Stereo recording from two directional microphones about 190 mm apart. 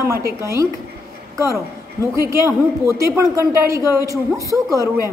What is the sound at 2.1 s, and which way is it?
A woman's voice, 15° right (ahead or behind).